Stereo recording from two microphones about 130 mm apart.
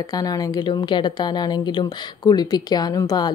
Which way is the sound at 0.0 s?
30° left (ahead or behind).